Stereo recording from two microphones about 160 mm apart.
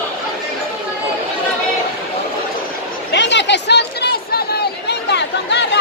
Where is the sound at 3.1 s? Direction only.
90° left.